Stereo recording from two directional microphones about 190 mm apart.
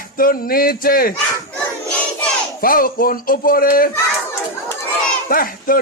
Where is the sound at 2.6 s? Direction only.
50° left (ahead or behind).